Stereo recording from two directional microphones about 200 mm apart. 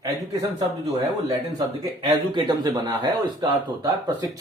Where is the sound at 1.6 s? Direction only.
20° right (ahead or behind).